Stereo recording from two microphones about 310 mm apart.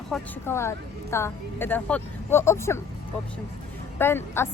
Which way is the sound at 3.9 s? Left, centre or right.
Centre.